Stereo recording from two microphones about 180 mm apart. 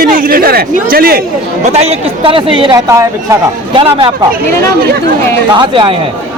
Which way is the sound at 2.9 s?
15° right (ahead or behind).